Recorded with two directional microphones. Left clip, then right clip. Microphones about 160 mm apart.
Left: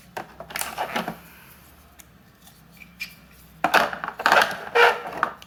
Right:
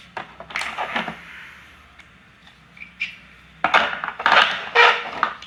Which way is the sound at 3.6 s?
25° left (ahead or behind).